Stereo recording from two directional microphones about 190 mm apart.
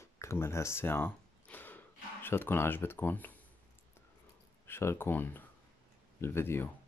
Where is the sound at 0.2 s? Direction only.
15° left (ahead or behind).